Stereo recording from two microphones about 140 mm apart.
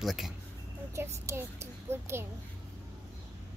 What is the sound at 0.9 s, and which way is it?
A child's voice, 20° right (ahead or behind).